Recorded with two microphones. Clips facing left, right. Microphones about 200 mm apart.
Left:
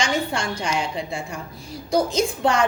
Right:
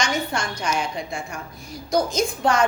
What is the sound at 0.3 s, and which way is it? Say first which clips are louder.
Speech: left 1 dB; 30° left (ahead or behind).